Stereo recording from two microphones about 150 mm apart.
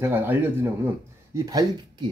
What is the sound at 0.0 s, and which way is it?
Speech, 15° right (ahead or behind).